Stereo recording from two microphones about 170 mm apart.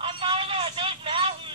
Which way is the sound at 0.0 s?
30° right (ahead or behind).